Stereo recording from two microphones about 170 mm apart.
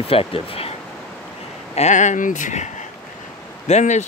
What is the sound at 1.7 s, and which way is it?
Speech, 45° left (ahead or behind).